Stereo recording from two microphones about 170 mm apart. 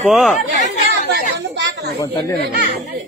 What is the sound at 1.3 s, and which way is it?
Speech, 90° right.